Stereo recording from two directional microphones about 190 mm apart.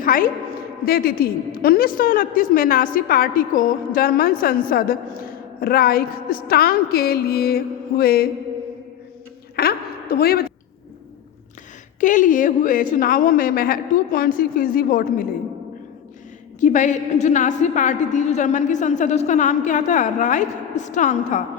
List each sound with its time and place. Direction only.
0.0 s a woman's voice: 45° left (ahead or behind)
9.6 s a sound: 55° left (ahead or behind)
11.9 s a woman's voice: 45° left (ahead or behind)
16.6 s a woman's voice: 40° left (ahead or behind)